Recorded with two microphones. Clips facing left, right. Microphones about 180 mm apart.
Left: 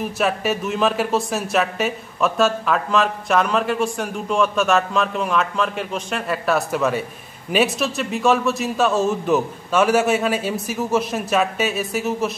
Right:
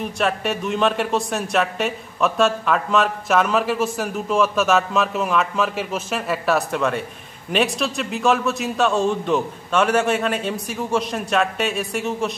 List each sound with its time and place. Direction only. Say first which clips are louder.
0.0 s speech: left 1 dB; 5° left (ahead or behind)